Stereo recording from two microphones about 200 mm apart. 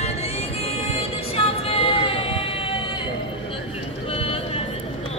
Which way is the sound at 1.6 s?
30° left (ahead or behind).